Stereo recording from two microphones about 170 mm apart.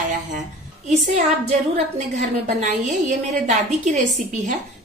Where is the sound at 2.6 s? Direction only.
45° right (ahead or behind).